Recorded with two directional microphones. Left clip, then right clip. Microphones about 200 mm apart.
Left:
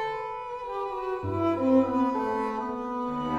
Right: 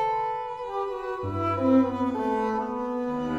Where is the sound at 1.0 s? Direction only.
20° right (ahead or behind).